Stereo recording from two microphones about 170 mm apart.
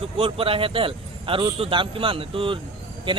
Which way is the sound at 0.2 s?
30° right (ahead or behind).